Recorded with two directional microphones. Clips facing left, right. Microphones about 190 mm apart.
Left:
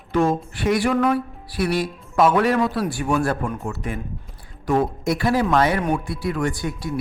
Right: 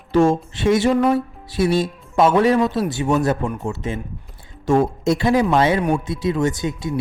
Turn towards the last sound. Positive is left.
turn(degrees=-20)  # may be behind; listen again after turning